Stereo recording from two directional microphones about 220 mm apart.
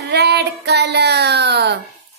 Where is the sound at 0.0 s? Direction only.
50° right (ahead or behind).